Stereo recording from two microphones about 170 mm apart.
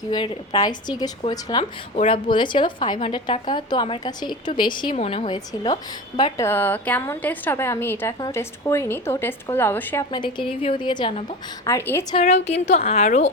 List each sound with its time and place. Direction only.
0.1 s a woman's voice: 25° left (ahead or behind)
10.1 s a woman's voice: 30° left (ahead or behind)
11.6 s a woman's voice: 15° left (ahead or behind)
12.2 s a woman's voice: 40° left (ahead or behind)